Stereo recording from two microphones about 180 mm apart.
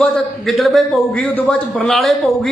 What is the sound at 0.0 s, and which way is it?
A man's voice, centre (ahead or behind).